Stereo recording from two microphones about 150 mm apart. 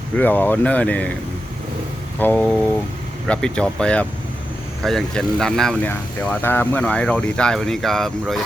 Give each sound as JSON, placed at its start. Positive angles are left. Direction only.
{"t": 0.2, "sound": "speech", "side_deg": 10}
{"t": 2.1, "sound": "speech", "side_deg": 10}